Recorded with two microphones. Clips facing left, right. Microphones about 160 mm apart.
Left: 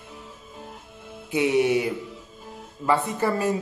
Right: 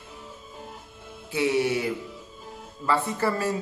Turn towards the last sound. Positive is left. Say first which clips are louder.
# left 2 dB
turn(degrees=15)  # may be behind; listen again after turning